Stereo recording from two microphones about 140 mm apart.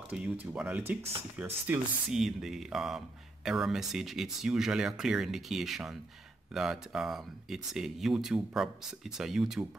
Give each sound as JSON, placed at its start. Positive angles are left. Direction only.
{"t": 0.1, "sound": "speech", "side_deg": -5}